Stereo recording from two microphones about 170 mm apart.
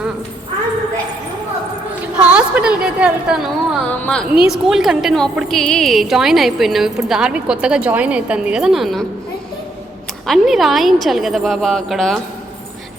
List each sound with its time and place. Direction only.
2.1 s a woman's voice: 10° right (ahead or behind)
10.2 s a woman's voice: centre (ahead or behind)